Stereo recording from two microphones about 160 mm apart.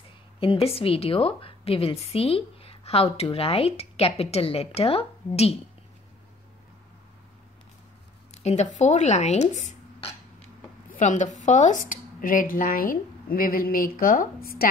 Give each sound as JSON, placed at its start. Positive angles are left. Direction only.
{"t": 0.7, "sound": "a woman's voice", "side_deg": 35}
{"t": 8.4, "sound": "speech", "side_deg": 45}